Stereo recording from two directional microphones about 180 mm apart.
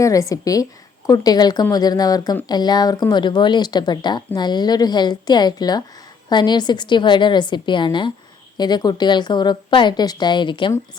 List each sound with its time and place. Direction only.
0.0 s speech: 20° left (ahead or behind)